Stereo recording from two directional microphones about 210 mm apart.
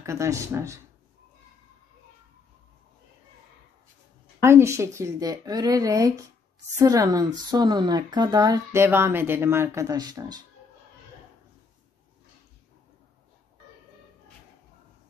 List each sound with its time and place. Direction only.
0.0 s speech: 15° right (ahead or behind)
4.4 s speech: 10° right (ahead or behind)